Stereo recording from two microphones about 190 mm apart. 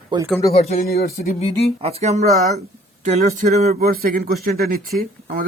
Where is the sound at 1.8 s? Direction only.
35° right (ahead or behind).